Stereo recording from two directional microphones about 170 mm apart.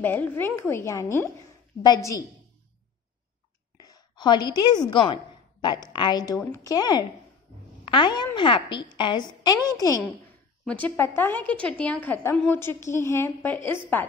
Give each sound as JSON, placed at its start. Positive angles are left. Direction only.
{"t": 0.0, "sound": "a woman's voice", "side_deg": 10}
{"t": 3.8, "sound": "a woman's voice", "side_deg": 25}
{"t": 10.6, "sound": "a woman's voice", "side_deg": 5}